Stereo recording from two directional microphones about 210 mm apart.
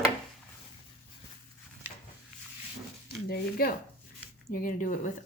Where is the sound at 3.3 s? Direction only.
45° left (ahead or behind).